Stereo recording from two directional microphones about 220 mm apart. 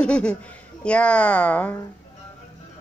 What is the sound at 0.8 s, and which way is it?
Speech, 5° left (ahead or behind).